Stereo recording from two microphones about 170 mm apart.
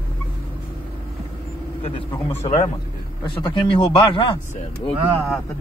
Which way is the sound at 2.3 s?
40° left (ahead or behind).